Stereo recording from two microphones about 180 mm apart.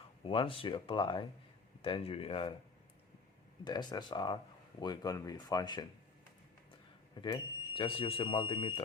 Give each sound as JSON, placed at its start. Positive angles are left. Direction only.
{"t": 0.3, "sound": "speech", "side_deg": 30}
{"t": 3.6, "sound": "speech", "side_deg": 25}
{"t": 7.2, "sound": "speech", "side_deg": 25}